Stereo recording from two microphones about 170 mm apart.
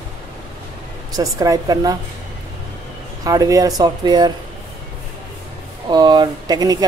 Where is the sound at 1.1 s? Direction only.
20° right (ahead or behind).